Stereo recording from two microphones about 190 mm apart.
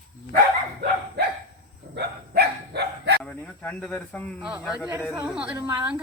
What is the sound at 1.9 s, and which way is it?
Dog, 60° right (ahead or behind).